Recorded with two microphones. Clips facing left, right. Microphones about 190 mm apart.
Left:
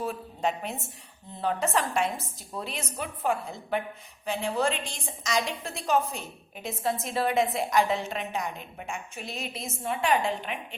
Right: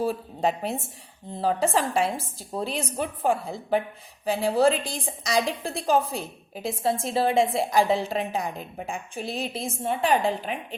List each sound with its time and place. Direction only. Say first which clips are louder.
0.0 s a woman's voice: right 5 dB; 35° right (ahead or behind)